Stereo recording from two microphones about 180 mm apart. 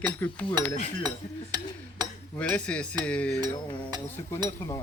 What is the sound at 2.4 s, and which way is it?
Speech, 5° left (ahead or behind).